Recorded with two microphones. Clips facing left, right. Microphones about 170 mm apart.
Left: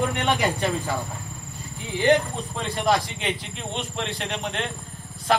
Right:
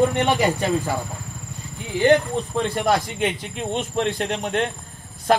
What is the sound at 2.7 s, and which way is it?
Speech, 50° right (ahead or behind).